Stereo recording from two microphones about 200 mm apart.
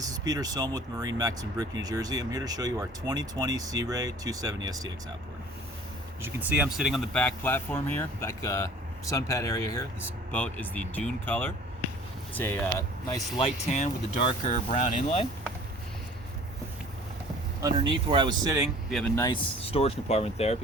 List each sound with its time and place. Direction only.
0.0 s speech: 20° right (ahead or behind)
6.2 s speech: 5° right (ahead or behind); by 12.5 s 10° left (ahead or behind)
13.4 s speech: 35° left (ahead or behind)
17.6 s speech: 20° right (ahead or behind)
18.9 s speech: centre (ahead or behind)
19.1 s speech: 20° left (ahead or behind)
19.6 s speech: 30° left (ahead or behind)